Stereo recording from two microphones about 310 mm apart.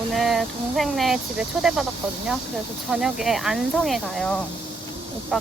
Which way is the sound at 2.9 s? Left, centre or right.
Centre.